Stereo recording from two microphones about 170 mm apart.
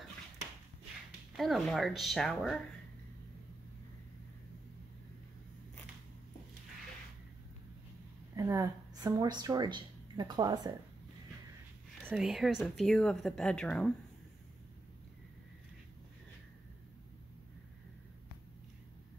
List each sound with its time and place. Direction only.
1.3 s a woman's voice: centre (ahead or behind)
8.4 s a woman's voice: 20° right (ahead or behind)
12.1 s a woman's voice: centre (ahead or behind)